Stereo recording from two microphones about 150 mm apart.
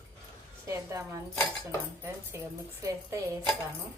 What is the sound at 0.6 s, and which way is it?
A woman's voice, 20° right (ahead or behind).